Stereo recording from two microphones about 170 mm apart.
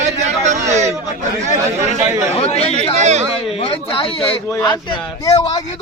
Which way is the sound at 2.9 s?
40° right (ahead or behind).